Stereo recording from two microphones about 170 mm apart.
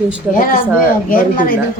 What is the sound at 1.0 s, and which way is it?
Speech, 55° left (ahead or behind).